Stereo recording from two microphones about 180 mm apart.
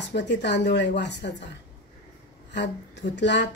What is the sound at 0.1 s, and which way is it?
Speech, 70° left (ahead or behind).